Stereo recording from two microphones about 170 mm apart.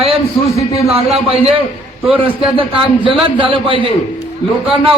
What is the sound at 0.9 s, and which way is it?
A man's voice, 35° right (ahead or behind).